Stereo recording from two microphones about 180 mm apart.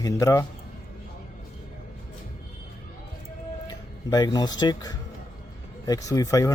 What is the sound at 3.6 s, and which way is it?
Speech, 20° left (ahead or behind).